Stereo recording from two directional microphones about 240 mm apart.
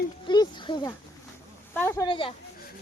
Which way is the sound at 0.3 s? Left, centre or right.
Centre.